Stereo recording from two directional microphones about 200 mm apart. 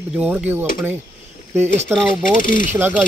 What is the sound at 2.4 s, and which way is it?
Speech, 40° left (ahead or behind).